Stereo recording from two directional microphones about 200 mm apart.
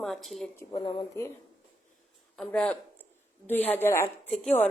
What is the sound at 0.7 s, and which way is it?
Speech, 25° left (ahead or behind).